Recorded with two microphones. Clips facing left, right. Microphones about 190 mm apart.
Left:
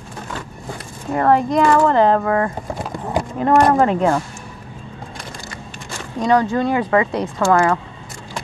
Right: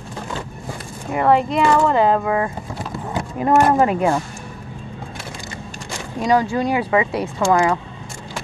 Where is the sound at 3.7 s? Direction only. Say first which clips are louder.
Left 1 dB; 15° right (ahead or behind).